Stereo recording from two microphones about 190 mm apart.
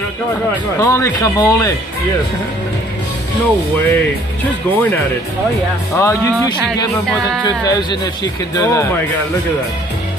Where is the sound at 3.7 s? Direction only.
10° left (ahead or behind).